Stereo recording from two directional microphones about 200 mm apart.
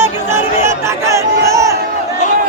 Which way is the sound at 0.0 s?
10° right (ahead or behind).